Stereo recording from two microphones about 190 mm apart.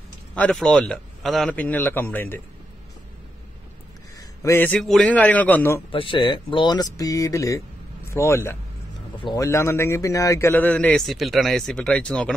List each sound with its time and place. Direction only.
0.3 s a man's voice: 5° left (ahead or behind)
4.4 s a man's voice: 15° left (ahead or behind)
5.9 s a man's voice: 25° left (ahead or behind); by 12.4 s 5° left (ahead or behind)